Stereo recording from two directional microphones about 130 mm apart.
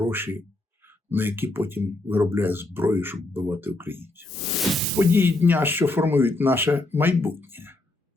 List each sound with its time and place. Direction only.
0.0 s speech: 15° right (ahead or behind)
4.3 s a sound: centre (ahead or behind)
4.9 s speech: 15° right (ahead or behind)